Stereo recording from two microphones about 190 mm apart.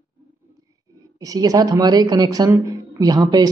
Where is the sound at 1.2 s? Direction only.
20° right (ahead or behind).